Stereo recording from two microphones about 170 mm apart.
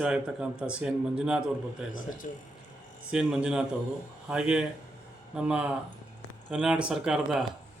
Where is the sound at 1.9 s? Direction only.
55° left (ahead or behind).